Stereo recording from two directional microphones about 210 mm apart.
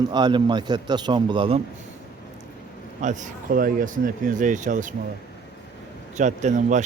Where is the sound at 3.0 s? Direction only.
35° right (ahead or behind).